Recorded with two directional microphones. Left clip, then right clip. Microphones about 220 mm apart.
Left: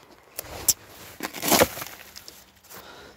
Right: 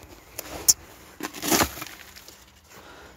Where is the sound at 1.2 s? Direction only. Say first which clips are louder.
Left 2 dB; 35° left (ahead or behind).